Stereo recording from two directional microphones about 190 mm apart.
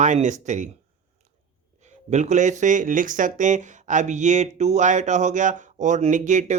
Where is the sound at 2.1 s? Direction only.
40° right (ahead or behind).